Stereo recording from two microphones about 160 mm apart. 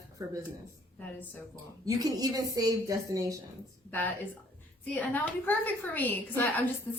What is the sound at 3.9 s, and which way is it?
A woman's voice, 10° left (ahead or behind).